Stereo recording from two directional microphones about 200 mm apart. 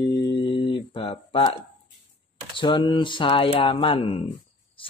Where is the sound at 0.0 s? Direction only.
20° left (ahead or behind).